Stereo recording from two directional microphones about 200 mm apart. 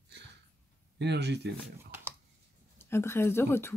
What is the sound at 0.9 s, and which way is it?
Speech, 60° right (ahead or behind).